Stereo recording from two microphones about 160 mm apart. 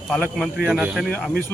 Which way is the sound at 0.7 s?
5° right (ahead or behind).